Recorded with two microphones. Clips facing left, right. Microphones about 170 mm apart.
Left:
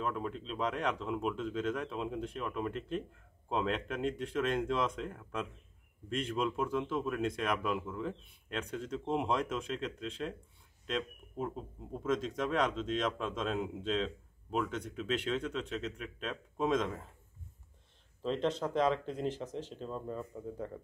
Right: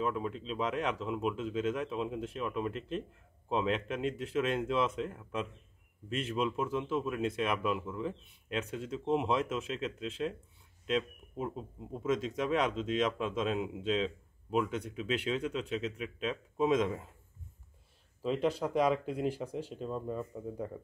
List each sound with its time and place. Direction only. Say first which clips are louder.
0.0 s speech: right 3 dB; centre (ahead or behind)
18.2 s speech: right 2 dB; 10° right (ahead or behind)